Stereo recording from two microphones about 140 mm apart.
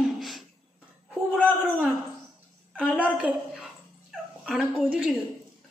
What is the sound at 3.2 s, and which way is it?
Speech, 10° right (ahead or behind).